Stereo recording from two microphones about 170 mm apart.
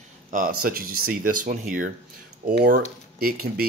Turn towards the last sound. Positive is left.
turn(degrees=-60)  # may be behind; listen again after turning